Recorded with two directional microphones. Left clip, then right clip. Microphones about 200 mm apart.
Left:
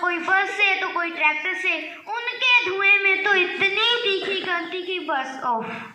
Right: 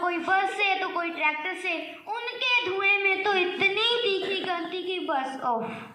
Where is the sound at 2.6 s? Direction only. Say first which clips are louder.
Left 5 dB; 45° right (ahead or behind).